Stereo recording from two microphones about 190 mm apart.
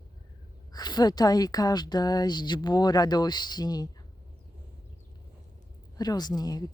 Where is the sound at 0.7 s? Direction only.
20° left (ahead or behind).